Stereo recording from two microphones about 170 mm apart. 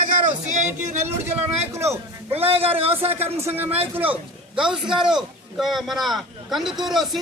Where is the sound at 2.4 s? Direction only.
35° right (ahead or behind).